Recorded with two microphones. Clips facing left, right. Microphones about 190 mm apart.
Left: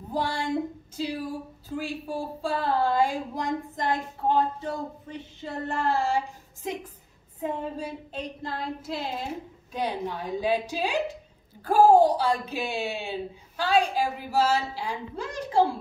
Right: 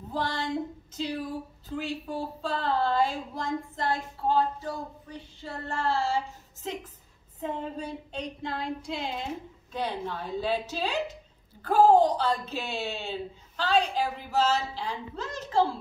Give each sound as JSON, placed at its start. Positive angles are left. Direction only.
{"t": 0.1, "sound": "speech", "side_deg": 10}